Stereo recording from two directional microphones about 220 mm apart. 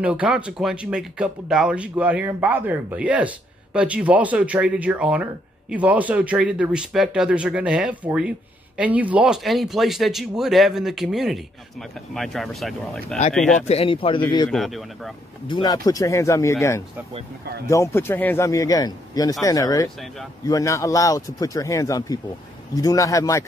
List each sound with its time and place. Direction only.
0.0 s speech: 5° right (ahead or behind)
13.6 s speech: 30° left (ahead or behind)
14.5 s speech: centre (ahead or behind)
15.4 s a man's voice: 20° left (ahead or behind)
17.6 s a man's voice: 10° left (ahead or behind)